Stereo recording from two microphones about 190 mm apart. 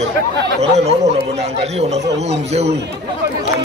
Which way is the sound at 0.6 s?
35° right (ahead or behind).